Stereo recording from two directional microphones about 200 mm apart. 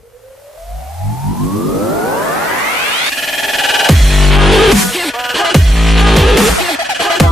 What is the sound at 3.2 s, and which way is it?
Music, centre (ahead or behind).